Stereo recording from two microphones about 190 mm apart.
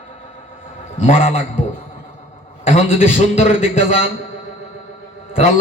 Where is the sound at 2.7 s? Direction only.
30° left (ahead or behind).